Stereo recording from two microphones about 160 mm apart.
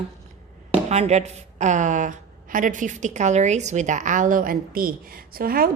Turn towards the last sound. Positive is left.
turn(degrees=-65)  # may be behind; listen again after turning